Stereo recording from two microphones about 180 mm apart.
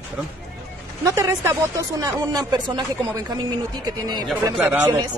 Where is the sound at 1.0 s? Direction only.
15° right (ahead or behind).